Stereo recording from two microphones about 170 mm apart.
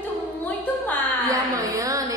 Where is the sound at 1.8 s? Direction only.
20° right (ahead or behind).